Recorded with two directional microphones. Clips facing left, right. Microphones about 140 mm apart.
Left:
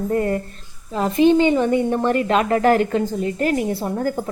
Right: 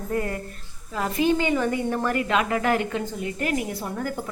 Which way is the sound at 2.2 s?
40° left (ahead or behind).